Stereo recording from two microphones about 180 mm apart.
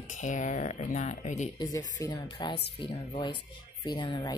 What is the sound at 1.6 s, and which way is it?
Speech, 20° left (ahead or behind).